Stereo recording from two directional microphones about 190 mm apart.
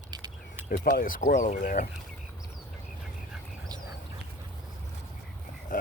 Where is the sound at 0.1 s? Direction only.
20° right (ahead or behind).